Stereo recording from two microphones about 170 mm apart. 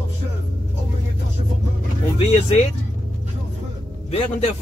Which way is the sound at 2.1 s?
35° left (ahead or behind).